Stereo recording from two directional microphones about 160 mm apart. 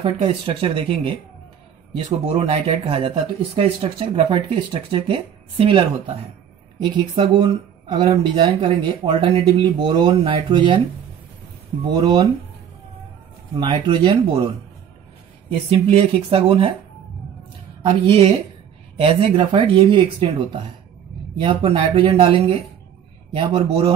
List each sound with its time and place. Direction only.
0.0 s speech: 35° right (ahead or behind)
11.8 s speech: 30° right (ahead or behind)
13.6 s speech: 30° right (ahead or behind)
15.7 s speech: 40° right (ahead or behind)
17.8 s speech: 35° right (ahead or behind)